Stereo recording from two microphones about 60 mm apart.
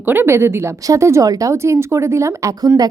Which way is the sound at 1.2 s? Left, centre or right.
Right.